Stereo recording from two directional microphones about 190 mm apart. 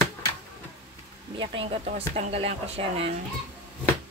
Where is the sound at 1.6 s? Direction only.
30° right (ahead or behind).